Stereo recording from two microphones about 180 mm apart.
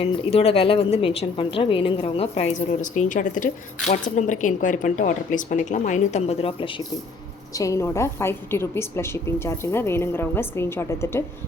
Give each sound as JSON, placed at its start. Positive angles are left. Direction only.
{"t": 0.0, "sound": "a woman's voice", "side_deg": 35}
{"t": 7.5, "sound": "a woman's voice", "side_deg": 20}